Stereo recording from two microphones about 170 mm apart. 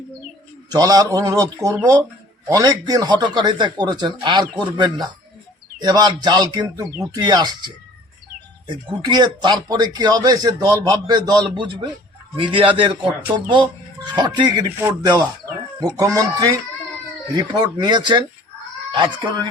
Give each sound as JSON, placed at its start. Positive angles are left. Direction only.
{"t": 0.7, "sound": "a man's voice", "side_deg": -20}